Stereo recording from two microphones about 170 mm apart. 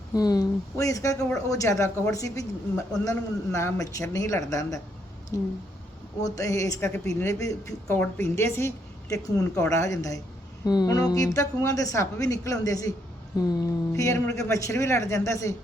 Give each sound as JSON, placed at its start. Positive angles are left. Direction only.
{"t": 0.1, "sound": "a woman's voice", "side_deg": 20}